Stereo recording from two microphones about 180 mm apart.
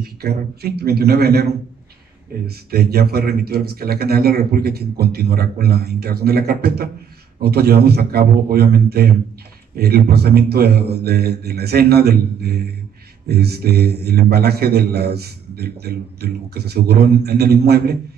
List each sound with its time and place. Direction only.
0.0 s a man's voice: 60° right (ahead or behind)